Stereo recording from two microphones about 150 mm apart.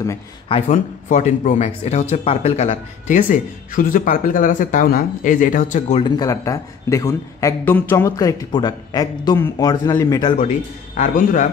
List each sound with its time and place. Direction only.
0.5 s speech: 50° left (ahead or behind)
5.9 s a man's voice: 30° left (ahead or behind)
11.0 s speech: 55° left (ahead or behind)